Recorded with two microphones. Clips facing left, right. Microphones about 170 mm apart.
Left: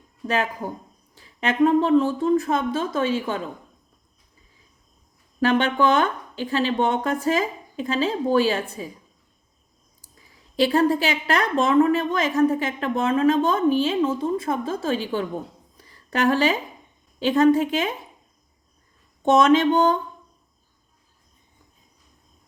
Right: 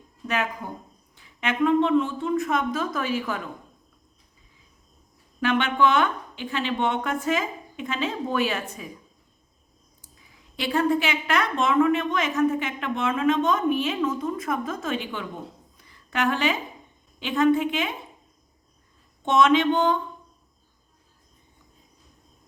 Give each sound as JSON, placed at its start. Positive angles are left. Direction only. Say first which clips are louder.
{"t": 0.3, "sound": "a woman's voice", "louder": "left 3 dB", "side_deg": 35}
{"t": 5.4, "sound": "a woman's voice", "louder": "left 2 dB", "side_deg": 35}
{"t": 10.0, "sound": "a woman's voice", "louder": "left 1 dB", "side_deg": 35}
{"t": 15.8, "sound": "a sound", "louder": "left 4 dB", "side_deg": 35}
{"t": 17.2, "sound": "a woman's voice", "louder": "left 4 dB", "side_deg": 40}
{"t": 19.2, "sound": "a woman's voice", "louder": "left 3 dB", "side_deg": 40}